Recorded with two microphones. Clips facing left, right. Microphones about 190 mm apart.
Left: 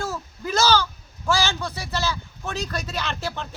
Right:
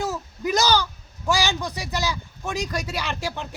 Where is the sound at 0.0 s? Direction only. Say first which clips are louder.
Right 3 dB; 15° right (ahead or behind).